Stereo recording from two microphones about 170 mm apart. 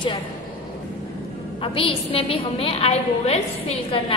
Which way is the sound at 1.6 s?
30° left (ahead or behind).